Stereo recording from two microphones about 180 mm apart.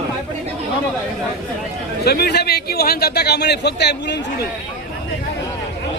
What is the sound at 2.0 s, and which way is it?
Speech, 60° left (ahead or behind).